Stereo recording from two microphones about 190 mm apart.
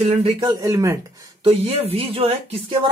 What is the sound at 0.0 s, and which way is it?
Speech, 30° right (ahead or behind).